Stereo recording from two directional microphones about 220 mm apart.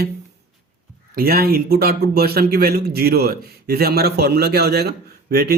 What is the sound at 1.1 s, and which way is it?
Speech, 45° right (ahead or behind).